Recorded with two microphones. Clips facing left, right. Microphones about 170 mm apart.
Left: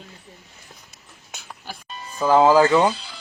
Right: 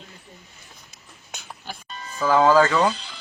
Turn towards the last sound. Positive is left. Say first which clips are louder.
# left 3 dB
turn(degrees=5)  # may be behind; listen again after turning